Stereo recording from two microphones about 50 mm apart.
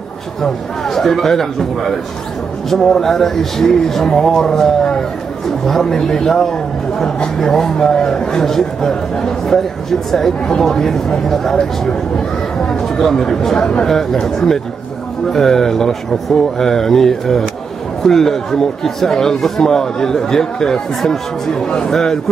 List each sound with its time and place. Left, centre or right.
0.4 s speech: centre
12.6 s speech: centre